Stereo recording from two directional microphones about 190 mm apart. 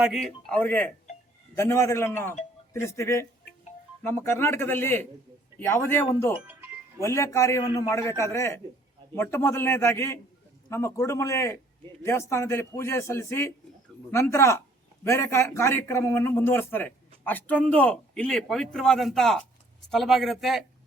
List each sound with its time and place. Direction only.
0.0 s a man's voice: centre (ahead or behind)
6.4 s music: 10° right (ahead or behind)
7.0 s a man's voice: 15° left (ahead or behind); by 20.7 s centre (ahead or behind)